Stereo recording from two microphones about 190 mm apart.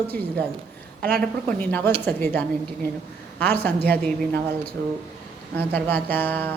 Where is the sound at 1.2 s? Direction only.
5° left (ahead or behind).